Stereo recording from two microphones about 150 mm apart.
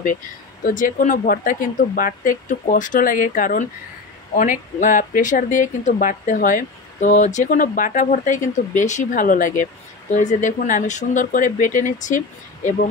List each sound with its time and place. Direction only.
0.7 s speech: 65° left (ahead or behind)